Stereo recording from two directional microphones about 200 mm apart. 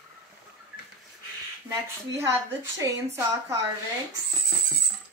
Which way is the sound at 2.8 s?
15° right (ahead or behind).